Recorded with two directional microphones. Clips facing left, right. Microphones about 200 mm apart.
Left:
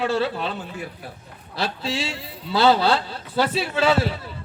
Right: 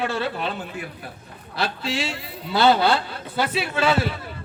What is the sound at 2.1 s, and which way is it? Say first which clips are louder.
A man's voice: even; 30° left (ahead or behind).